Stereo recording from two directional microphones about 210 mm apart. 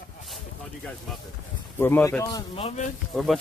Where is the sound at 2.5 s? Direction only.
35° left (ahead or behind).